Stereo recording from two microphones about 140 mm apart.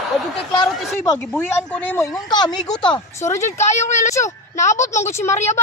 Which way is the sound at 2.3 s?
30° left (ahead or behind).